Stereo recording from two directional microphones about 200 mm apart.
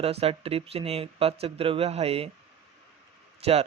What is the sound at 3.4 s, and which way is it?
Speech, 30° right (ahead or behind).